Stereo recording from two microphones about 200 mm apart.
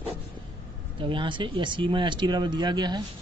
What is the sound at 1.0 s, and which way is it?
Speech, 25° right (ahead or behind).